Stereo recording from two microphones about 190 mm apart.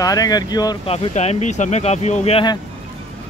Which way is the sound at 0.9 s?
35° left (ahead or behind).